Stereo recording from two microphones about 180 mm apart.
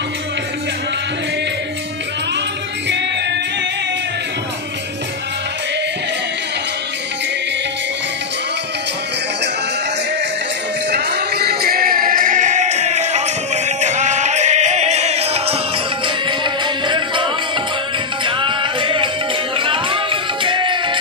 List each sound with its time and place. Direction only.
10.9 s music: 65° right (ahead or behind); by 21.0 s 25° right (ahead or behind)